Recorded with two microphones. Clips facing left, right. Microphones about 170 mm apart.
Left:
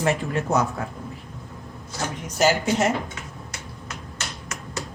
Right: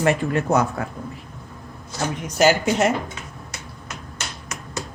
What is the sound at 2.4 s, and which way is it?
Speech, 75° right (ahead or behind).